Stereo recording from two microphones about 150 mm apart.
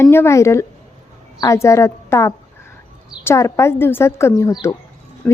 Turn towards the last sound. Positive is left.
turn(degrees=15)  # may be behind; listen again after turning